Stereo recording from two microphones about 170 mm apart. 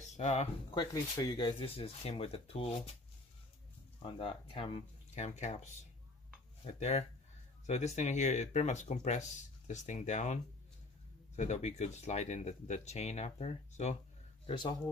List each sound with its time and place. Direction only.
0.0 s a sound: 45° left (ahead or behind)
1.1 s speech: 20° left (ahead or behind)
4.0 s speech: 35° left (ahead or behind)
14.4 s a man's voice: 25° left (ahead or behind)